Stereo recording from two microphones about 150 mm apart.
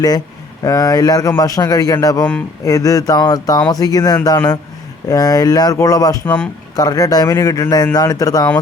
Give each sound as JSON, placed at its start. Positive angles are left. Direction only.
{"t": 0.6, "sound": "speech", "side_deg": 25}
{"t": 6.2, "sound": "speech", "side_deg": 10}
{"t": 6.7, "sound": "speech", "side_deg": 25}